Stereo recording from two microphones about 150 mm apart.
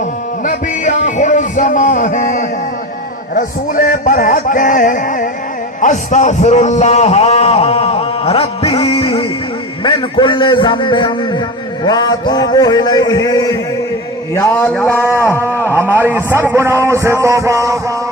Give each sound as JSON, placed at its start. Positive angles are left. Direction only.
{"t": 0.4, "sound": "music", "side_deg": 55}
{"t": 5.8, "sound": "a man's voice", "side_deg": 55}
{"t": 11.9, "sound": "a sound", "side_deg": 25}
{"t": 14.5, "sound": "a man's voice", "side_deg": 10}
{"t": 15.0, "sound": "a man's voice", "side_deg": -15}